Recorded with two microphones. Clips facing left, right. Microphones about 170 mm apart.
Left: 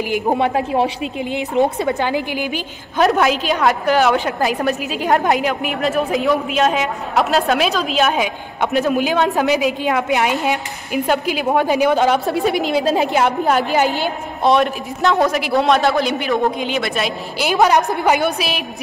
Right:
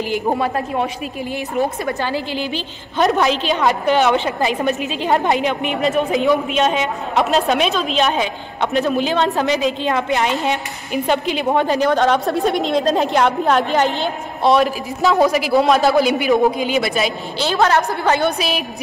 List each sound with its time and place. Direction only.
0.0 s a woman's voice: 15° left (ahead or behind)
3.0 s a woman's voice: centre (ahead or behind)
17.4 s a woman's voice: 15° left (ahead or behind)